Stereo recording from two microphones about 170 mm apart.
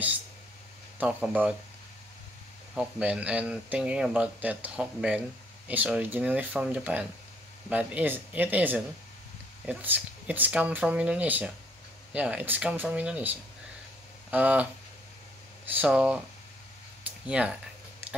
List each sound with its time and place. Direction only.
0.9 s speech: 10° right (ahead or behind)
2.7 s speech: 5° right (ahead or behind)
17.3 s speech: 5° right (ahead or behind)